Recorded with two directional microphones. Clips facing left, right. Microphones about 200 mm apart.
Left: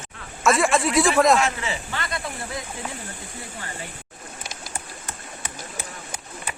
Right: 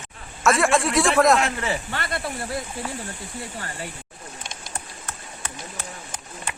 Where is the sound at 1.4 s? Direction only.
55° right (ahead or behind).